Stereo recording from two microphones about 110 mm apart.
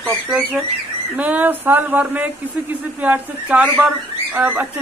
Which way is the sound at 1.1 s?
15° right (ahead or behind).